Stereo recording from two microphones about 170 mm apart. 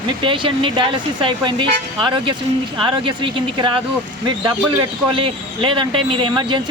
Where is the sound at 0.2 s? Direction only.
30° right (ahead or behind).